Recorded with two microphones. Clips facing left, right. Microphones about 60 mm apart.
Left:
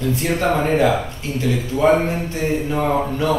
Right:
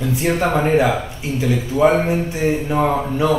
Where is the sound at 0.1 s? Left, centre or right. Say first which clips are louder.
Right 2 dB; centre.